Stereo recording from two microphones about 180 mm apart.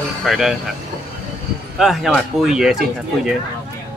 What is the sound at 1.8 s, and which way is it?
Speech, centre (ahead or behind).